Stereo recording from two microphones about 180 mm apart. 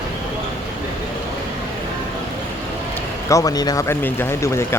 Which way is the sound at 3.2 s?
20° left (ahead or behind).